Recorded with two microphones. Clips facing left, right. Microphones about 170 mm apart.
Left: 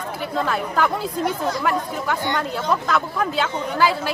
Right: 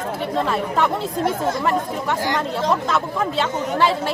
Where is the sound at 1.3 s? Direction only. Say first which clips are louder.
Right 2 dB; 25° right (ahead or behind).